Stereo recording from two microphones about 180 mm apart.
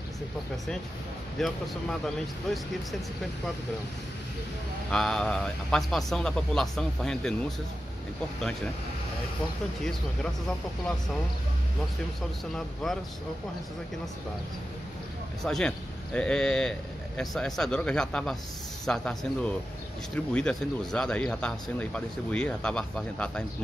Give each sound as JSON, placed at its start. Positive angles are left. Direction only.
{"t": 1.4, "sound": "speech", "side_deg": 0}
{"t": 4.9, "sound": "speech", "side_deg": 5}
{"t": 12.2, "sound": "speech", "side_deg": 0}
{"t": 15.4, "sound": "speech", "side_deg": 5}